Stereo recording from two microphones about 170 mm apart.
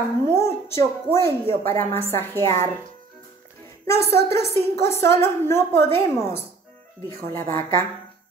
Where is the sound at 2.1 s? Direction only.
15° left (ahead or behind).